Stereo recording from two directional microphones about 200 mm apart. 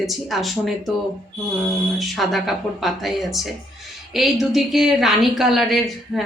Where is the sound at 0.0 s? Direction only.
Centre (ahead or behind).